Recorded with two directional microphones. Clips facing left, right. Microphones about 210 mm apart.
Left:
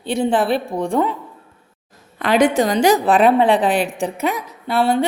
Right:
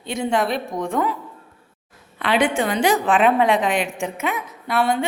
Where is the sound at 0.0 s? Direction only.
30° left (ahead or behind).